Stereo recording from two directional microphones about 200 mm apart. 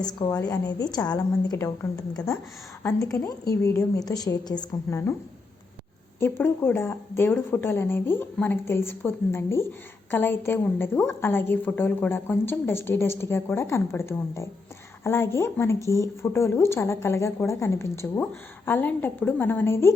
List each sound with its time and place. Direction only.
0.1 s a woman's voice: 20° left (ahead or behind)
6.1 s a woman's voice: 10° left (ahead or behind)